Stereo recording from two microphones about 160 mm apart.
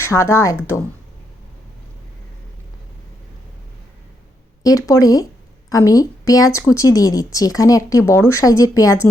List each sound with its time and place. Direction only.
0.0 s speech: 20° left (ahead or behind)
4.6 s speech: 20° left (ahead or behind)